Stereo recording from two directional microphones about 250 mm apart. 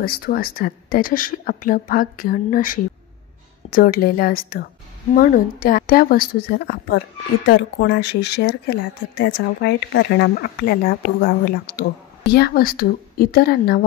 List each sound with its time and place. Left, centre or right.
0.0 s speech: left